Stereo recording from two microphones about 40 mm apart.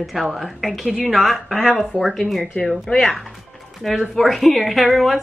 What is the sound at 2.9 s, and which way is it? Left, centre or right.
Speech, left.